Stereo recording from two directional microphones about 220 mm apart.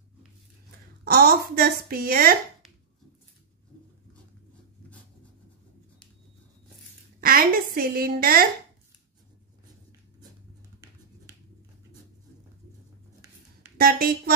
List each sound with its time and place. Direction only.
1.0 s a woman's voice: 45° right (ahead or behind)
7.2 s a woman's voice: 40° right (ahead or behind)
13.7 s speech: 40° right (ahead or behind)